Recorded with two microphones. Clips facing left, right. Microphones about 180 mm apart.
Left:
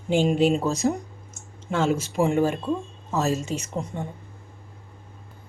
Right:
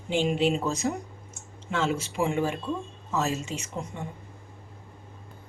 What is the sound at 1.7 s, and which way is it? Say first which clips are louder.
Speech: left 4 dB; 45° left (ahead or behind).